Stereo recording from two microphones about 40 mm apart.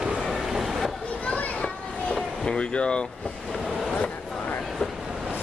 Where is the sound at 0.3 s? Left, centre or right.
Centre.